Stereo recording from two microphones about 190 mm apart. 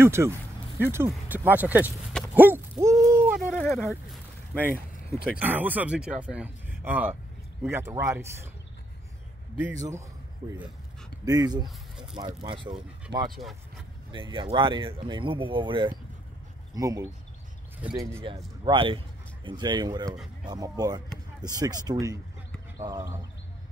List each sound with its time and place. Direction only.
0.0 s speech: 15° right (ahead or behind)
2.3 s hoot: 10° right (ahead or behind)
3.4 s speech: 10° left (ahead or behind)
4.1 s a sound: 10° right (ahead or behind)
5.4 s speech: 10° right (ahead or behind)
9.6 s speech: 10° right (ahead or behind)
11.2 s speech: 20° right (ahead or behind)
11.6 s speech: centre (ahead or behind)
12.3 s speech: 30° right (ahead or behind)
13.3 s speech: centre (ahead or behind)
14.1 s speech: 25° right (ahead or behind)
18.2 s speech: 25° right (ahead or behind)